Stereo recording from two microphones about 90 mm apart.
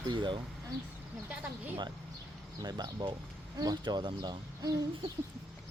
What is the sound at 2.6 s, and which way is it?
Speech, 50° right (ahead or behind).